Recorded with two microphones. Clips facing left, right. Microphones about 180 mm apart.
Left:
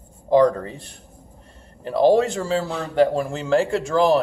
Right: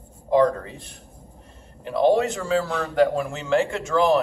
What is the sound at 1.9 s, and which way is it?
A man's voice, 35° left (ahead or behind).